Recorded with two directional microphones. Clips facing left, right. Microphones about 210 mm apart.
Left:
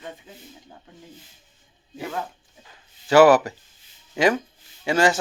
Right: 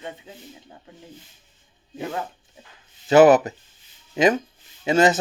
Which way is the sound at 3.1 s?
20° right (ahead or behind).